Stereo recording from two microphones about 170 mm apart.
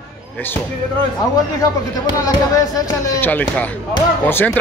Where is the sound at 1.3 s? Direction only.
20° left (ahead or behind).